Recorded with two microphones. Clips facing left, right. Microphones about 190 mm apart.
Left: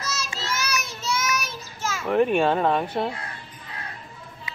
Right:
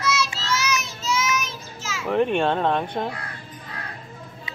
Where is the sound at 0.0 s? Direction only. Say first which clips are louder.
Right 6 dB; 45° left (ahead or behind).